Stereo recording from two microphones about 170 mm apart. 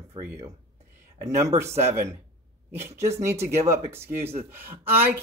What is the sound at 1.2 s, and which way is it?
Speech, 15° right (ahead or behind).